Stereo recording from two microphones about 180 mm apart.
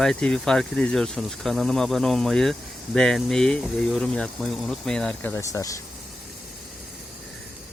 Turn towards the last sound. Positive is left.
turn(degrees=20)  # may be behind; listen again after turning